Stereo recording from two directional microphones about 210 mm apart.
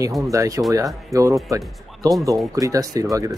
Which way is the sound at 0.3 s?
15° right (ahead or behind).